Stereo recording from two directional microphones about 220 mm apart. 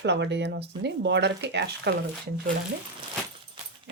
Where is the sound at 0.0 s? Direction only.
50° right (ahead or behind).